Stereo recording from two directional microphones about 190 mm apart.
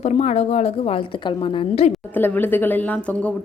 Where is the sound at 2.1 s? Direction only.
10° left (ahead or behind).